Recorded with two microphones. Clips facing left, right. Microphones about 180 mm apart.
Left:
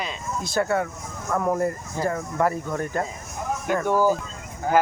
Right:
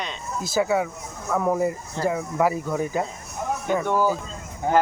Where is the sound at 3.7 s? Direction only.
5° left (ahead or behind).